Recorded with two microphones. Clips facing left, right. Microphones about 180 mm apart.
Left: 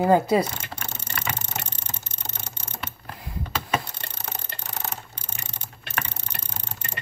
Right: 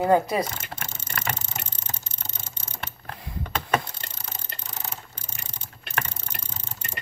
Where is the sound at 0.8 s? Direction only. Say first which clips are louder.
Right 1 dB; 65° left (ahead or behind).